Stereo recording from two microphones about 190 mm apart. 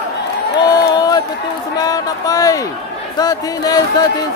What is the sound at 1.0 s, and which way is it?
Run, 20° left (ahead or behind).